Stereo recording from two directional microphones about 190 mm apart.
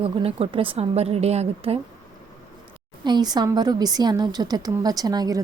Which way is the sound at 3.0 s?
20° right (ahead or behind).